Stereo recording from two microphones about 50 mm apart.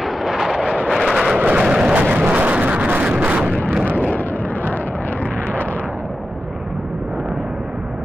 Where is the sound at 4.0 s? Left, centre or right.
Left.